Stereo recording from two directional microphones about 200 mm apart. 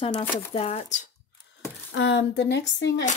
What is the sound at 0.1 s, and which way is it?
Speech, 10° left (ahead or behind).